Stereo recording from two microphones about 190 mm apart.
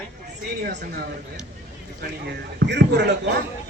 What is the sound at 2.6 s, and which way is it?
Speech, 65° right (ahead or behind).